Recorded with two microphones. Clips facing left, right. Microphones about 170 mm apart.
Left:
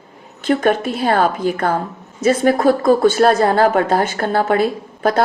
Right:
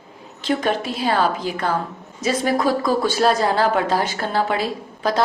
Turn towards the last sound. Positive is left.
turn(degrees=55)  # may be behind; listen again after turning